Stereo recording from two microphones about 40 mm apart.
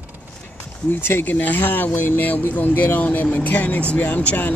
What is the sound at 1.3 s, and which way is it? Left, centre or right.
Speech, left.